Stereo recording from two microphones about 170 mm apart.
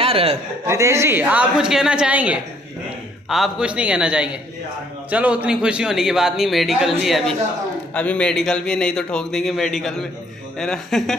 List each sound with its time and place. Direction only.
0.0 s a man's voice: 35° right (ahead or behind)
0.7 s a woman's voice: 15° right (ahead or behind); by 11.1 s 5° left (ahead or behind)